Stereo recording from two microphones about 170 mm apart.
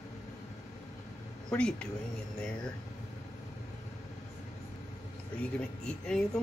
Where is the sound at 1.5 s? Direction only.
5° left (ahead or behind).